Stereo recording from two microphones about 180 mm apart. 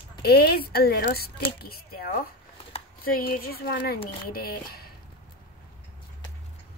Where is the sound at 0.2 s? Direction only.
60° left (ahead or behind).